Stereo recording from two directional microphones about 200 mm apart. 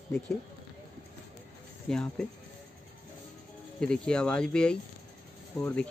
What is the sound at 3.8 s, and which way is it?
Speech, 5° left (ahead or behind).